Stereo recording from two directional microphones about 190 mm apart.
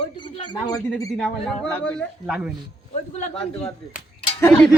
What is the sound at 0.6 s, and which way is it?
Speech, 20° left (ahead or behind).